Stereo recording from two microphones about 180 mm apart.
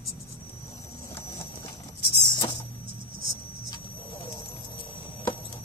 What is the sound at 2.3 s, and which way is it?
Music, 25° left (ahead or behind).